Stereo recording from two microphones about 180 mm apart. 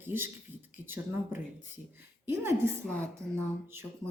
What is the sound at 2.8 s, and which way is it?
Speech, 5° left (ahead or behind).